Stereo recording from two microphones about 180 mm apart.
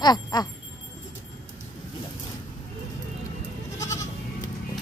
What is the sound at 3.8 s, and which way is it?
Goat, 15° left (ahead or behind).